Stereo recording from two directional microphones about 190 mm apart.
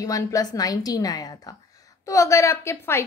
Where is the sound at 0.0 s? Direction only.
15° left (ahead or behind).